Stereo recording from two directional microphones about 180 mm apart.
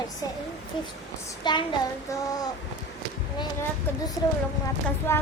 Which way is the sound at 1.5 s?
25° left (ahead or behind).